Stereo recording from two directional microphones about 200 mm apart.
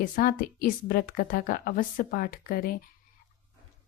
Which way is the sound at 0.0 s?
45° left (ahead or behind).